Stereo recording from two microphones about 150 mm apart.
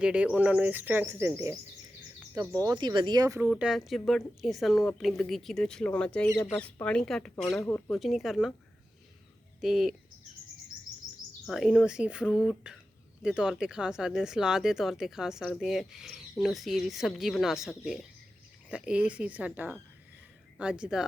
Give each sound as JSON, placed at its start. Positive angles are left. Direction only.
{"t": 0.0, "sound": "speech", "side_deg": -5}
{"t": 3.5, "sound": "speech", "side_deg": -5}
{"t": 6.3, "sound": "speech", "side_deg": 25}
{"t": 6.6, "sound": "speech", "side_deg": 10}
{"t": 9.6, "sound": "speech", "side_deg": -5}
{"t": 11.4, "sound": "speech", "side_deg": -5}